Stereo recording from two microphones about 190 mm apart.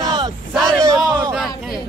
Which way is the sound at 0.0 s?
25° right (ahead or behind).